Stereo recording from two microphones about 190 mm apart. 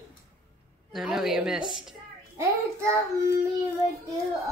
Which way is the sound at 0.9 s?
Centre (ahead or behind).